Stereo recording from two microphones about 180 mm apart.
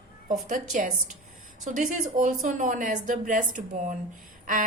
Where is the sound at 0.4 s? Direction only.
45° right (ahead or behind).